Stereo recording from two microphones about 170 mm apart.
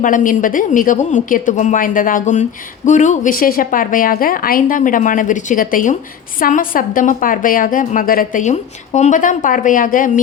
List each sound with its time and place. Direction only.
0.0 s a woman's voice: 50° left (ahead or behind)